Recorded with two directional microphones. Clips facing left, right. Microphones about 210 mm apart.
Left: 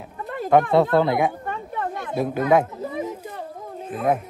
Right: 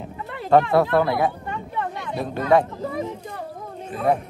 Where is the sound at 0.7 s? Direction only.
20° left (ahead or behind).